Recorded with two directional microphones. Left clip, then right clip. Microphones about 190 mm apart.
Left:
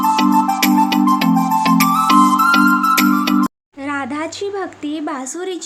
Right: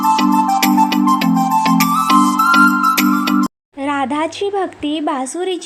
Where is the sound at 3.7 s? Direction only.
20° right (ahead or behind).